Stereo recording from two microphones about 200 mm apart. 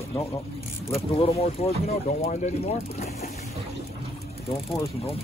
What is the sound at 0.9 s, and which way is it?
Speech, 30° left (ahead or behind).